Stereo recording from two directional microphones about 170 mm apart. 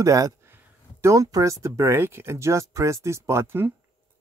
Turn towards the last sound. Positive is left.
turn(degrees=-15)  # may be behind; listen again after turning